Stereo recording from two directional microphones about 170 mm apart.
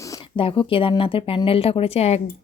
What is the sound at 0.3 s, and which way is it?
Speech, 30° left (ahead or behind).